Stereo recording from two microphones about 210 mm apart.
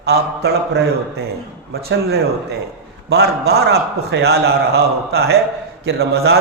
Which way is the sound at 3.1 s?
50° right (ahead or behind).